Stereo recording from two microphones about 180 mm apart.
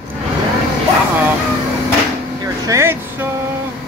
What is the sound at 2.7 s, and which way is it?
Speech, 15° right (ahead or behind).